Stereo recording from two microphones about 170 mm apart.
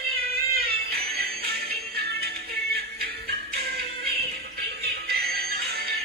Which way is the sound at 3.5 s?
65° right (ahead or behind).